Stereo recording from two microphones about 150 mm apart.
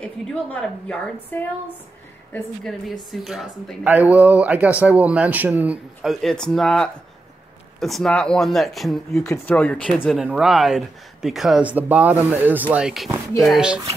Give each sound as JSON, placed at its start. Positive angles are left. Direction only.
{"t": 0.0, "sound": "a woman's voice", "side_deg": 5}
{"t": 6.2, "sound": "a woman's voice", "side_deg": 5}